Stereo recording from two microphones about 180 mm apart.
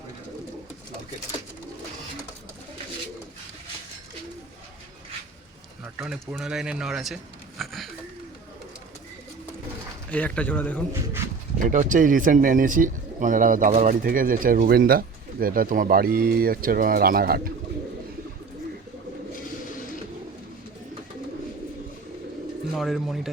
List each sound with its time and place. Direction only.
5.8 s speech: 5° right (ahead or behind)
7.6 s a sound: centre (ahead or behind)
10.1 s a man's voice: 10° left (ahead or behind)
11.6 s speech: 45° right (ahead or behind)
22.7 s speech: centre (ahead or behind)